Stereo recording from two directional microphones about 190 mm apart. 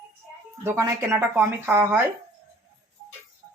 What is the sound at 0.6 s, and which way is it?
Speech, 10° right (ahead or behind).